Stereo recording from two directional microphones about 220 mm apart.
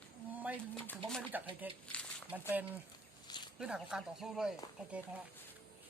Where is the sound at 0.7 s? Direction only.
10° left (ahead or behind).